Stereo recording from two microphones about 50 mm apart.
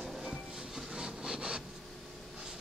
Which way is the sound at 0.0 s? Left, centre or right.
Centre.